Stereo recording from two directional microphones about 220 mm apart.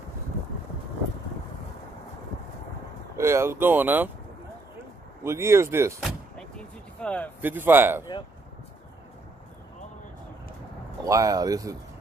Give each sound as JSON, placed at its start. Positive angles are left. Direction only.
{"t": 3.2, "sound": "speech", "side_deg": -10}
{"t": 5.2, "sound": "speech", "side_deg": -10}
{"t": 5.9, "sound": "door", "side_deg": 0}
{"t": 7.0, "sound": "speech", "side_deg": 5}
{"t": 7.4, "sound": "speech", "side_deg": -10}
{"t": 11.1, "sound": "speech", "side_deg": -15}